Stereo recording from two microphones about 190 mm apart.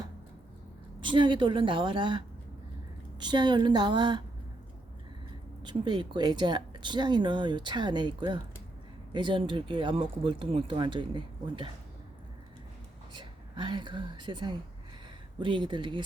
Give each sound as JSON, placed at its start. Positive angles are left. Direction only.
{"t": 1.0, "sound": "speech", "side_deg": -25}
{"t": 5.6, "sound": "speech", "side_deg": -25}
{"t": 13.1, "sound": "a woman's voice", "side_deg": -25}